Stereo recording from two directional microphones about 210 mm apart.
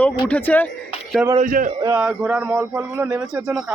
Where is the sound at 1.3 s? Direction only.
40° right (ahead or behind).